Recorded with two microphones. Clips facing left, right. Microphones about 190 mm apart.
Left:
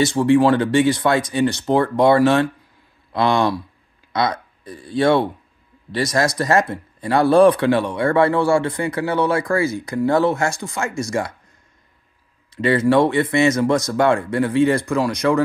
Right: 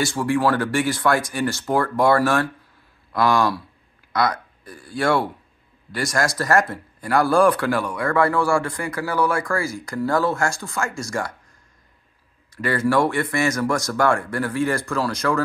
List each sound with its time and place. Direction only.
0.0 s speech: 20° left (ahead or behind)
12.4 s speech: 20° left (ahead or behind)